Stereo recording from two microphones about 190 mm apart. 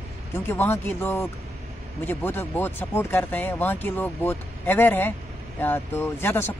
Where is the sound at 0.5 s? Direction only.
10° left (ahead or behind).